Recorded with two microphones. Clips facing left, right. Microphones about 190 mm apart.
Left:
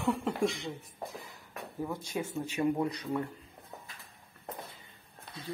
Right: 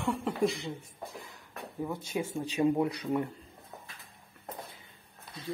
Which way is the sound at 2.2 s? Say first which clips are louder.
Right 3 dB; 15° right (ahead or behind).